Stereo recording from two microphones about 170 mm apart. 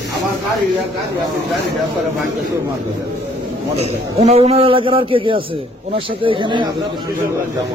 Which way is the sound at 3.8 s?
40° right (ahead or behind).